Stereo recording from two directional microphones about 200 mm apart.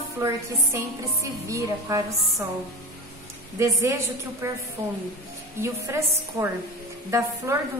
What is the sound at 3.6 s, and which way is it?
Speech, 15° right (ahead or behind).